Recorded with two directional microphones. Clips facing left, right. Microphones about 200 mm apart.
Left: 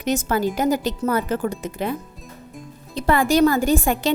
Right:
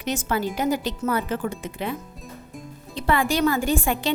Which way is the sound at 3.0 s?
40° left (ahead or behind).